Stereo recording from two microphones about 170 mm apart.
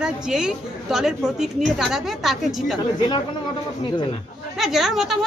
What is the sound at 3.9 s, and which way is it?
Speech, 25° left (ahead or behind).